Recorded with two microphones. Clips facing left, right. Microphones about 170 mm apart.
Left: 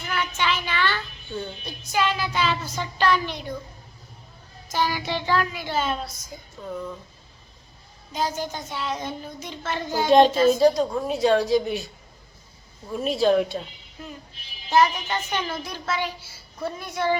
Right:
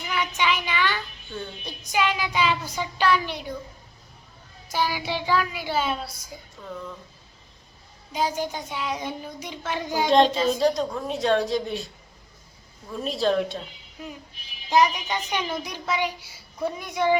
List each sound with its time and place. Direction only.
0.0 s child singing: 10° right (ahead or behind)
4.7 s a child's voice: 10° right (ahead or behind)
8.1 s a child's voice: 10° right (ahead or behind)
10.1 s a woman's voice: 5° left (ahead or behind)
12.9 s a woman's voice: 5° left (ahead or behind)
14.7 s a child's voice: 15° right (ahead or behind)